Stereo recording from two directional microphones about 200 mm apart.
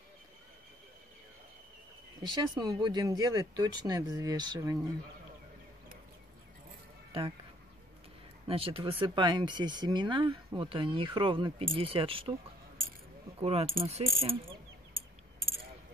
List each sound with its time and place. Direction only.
2.5 s speech: 20° right (ahead or behind)
8.5 s speech: 25° right (ahead or behind)
13.4 s speech: 30° right (ahead or behind)